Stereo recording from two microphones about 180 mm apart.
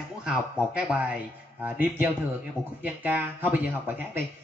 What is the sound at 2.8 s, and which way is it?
Speech, 10° right (ahead or behind).